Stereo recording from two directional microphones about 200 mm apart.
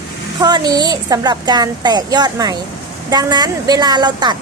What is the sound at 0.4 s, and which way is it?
A woman's voice, 20° right (ahead or behind).